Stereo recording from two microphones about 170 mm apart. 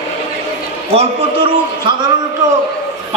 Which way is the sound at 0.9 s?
30° right (ahead or behind).